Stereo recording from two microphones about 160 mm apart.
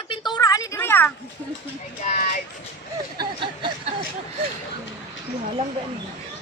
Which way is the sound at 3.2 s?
30° right (ahead or behind).